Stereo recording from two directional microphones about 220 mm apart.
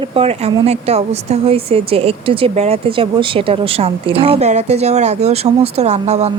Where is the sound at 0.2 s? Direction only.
25° right (ahead or behind).